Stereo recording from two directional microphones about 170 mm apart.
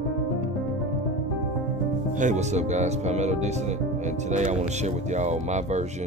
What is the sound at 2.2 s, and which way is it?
Speech, 45° right (ahead or behind).